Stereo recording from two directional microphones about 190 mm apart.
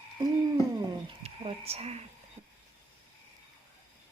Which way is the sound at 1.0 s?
30° right (ahead or behind).